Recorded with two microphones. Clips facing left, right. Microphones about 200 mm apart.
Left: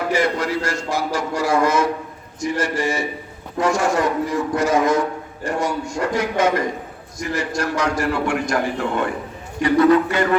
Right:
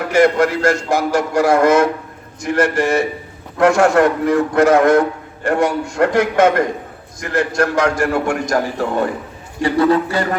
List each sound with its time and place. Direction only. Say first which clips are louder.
0.1 s a man's voice: right 9 dB; 50° right (ahead or behind); by 10.2 s 30° right (ahead or behind)